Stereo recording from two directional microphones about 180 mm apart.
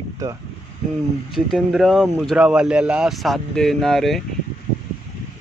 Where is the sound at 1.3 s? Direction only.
Centre (ahead or behind).